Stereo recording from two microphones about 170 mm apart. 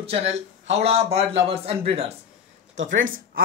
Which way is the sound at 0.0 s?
40° right (ahead or behind).